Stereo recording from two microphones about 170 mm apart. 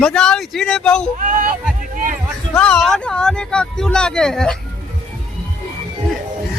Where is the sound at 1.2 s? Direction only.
50° right (ahead or behind).